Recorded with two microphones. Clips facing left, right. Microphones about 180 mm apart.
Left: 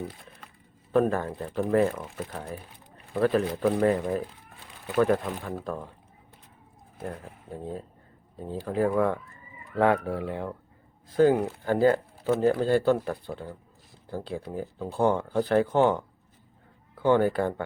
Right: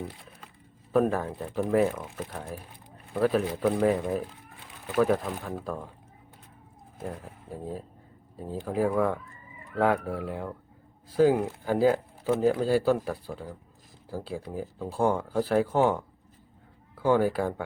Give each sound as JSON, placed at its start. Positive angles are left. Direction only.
{"t": 0.9, "sound": "speech", "side_deg": 0}
{"t": 7.0, "sound": "speech", "side_deg": -5}